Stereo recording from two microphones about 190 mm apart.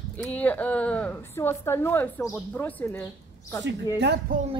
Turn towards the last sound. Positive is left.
turn(degrees=-60)  # may be behind; listen again after turning